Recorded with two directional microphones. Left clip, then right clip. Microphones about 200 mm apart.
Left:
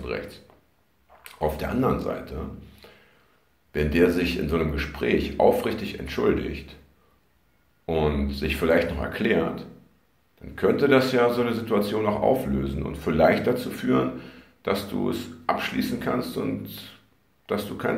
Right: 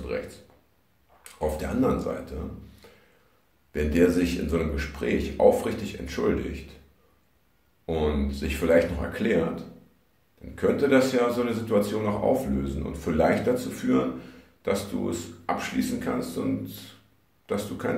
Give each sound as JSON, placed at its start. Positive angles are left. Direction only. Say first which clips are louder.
{"t": 0.0, "sound": "speech", "louder": "even", "side_deg": 5}
{"t": 7.8, "sound": "speech", "louder": "left 2 dB", "side_deg": 5}